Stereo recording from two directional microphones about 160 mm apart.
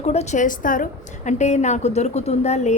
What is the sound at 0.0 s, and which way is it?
A woman's voice, 40° left (ahead or behind).